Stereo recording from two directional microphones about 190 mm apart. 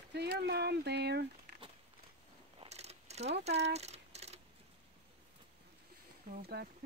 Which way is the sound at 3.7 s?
35° right (ahead or behind).